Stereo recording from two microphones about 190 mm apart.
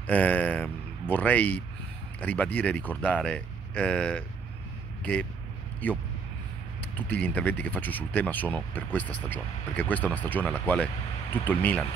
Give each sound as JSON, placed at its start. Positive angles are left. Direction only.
{"t": 0.0, "sound": "a man's voice", "side_deg": 10}
{"t": 5.8, "sound": "speech", "side_deg": 10}